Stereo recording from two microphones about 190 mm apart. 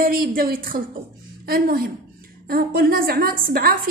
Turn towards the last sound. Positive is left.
turn(degrees=-50)  # may be behind; listen again after turning